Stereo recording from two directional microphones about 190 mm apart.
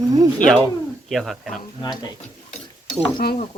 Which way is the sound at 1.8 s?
20° left (ahead or behind).